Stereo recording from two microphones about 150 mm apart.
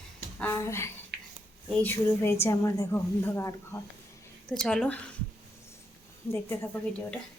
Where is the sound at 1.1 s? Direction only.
90° right.